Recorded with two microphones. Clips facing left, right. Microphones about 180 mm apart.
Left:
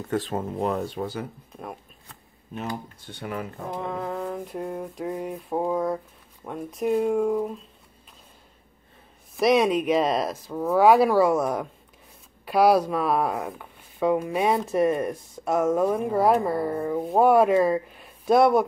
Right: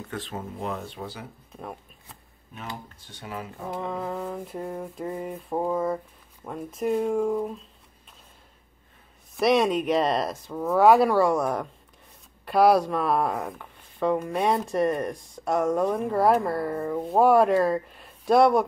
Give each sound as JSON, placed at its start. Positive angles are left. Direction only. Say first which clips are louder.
{"t": 0.1, "sound": "speech", "louder": "left 9 dB", "side_deg": 45}
{"t": 1.5, "sound": "speech", "louder": "left 1 dB", "side_deg": 5}
{"t": 3.1, "sound": "speech", "louder": "left 4 dB", "side_deg": 55}
{"t": 3.7, "sound": "speech", "louder": "even", "side_deg": 0}
{"t": 9.4, "sound": "speech", "louder": "left 1 dB", "side_deg": 0}